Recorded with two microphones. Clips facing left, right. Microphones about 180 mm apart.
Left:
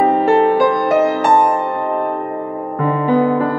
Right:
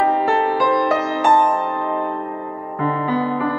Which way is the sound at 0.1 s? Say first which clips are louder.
Left 6 dB; 55° left (ahead or behind).